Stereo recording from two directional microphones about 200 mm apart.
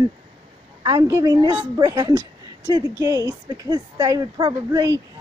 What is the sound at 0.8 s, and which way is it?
A woman's voice, 15° right (ahead or behind).